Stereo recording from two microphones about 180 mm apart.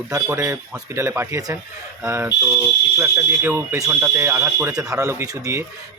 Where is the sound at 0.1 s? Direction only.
15° right (ahead or behind).